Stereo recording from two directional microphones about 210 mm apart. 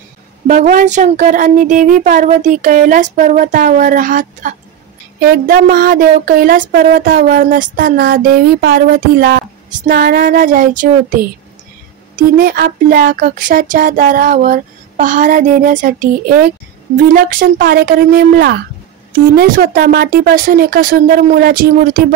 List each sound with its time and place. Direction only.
0.5 s speech: 35° right (ahead or behind)
12.2 s speech: 45° right (ahead or behind)